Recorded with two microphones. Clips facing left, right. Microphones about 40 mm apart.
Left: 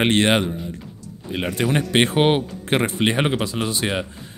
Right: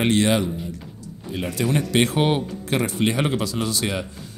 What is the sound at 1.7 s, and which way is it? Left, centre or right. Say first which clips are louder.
Speech: left 2 dB; left.